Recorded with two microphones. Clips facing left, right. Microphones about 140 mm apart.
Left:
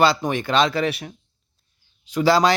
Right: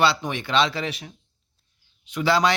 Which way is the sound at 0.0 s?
45° left (ahead or behind).